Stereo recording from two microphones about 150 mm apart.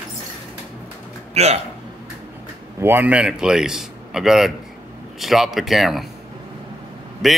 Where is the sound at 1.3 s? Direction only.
45° right (ahead or behind).